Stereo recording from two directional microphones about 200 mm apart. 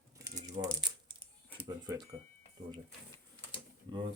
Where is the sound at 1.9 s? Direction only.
15° right (ahead or behind).